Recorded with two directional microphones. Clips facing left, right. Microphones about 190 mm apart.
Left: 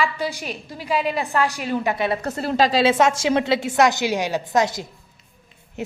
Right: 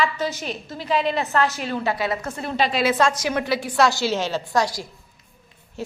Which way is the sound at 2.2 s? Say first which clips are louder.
Left 4 dB; 35° left (ahead or behind).